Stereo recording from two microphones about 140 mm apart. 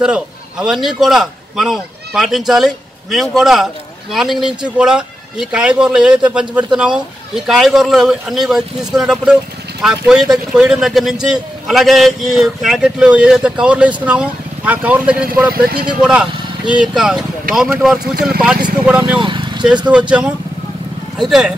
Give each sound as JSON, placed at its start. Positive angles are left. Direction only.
{"t": 0.0, "sound": "a man's voice", "side_deg": -5}
{"t": 15.5, "sound": "speech", "side_deg": -90}
{"t": 16.0, "sound": "speech", "side_deg": -5}
{"t": 19.1, "sound": "vehicle", "side_deg": -35}
{"t": 19.9, "sound": "a man's voice", "side_deg": -10}